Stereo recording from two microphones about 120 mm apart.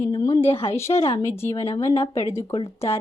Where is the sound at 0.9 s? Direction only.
60° left (ahead or behind).